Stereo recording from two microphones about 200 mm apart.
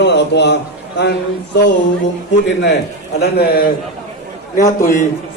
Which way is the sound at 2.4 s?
60° left (ahead or behind).